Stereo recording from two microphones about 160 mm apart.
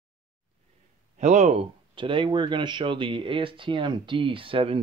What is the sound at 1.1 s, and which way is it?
Speech, 45° right (ahead or behind).